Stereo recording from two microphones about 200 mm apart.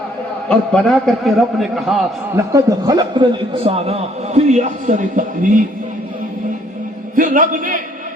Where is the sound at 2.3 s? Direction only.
15° right (ahead or behind); by 5.6 s 40° right (ahead or behind).